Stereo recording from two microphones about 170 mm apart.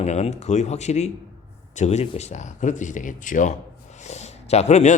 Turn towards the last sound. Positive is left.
turn(degrees=40)  # may be behind; listen again after turning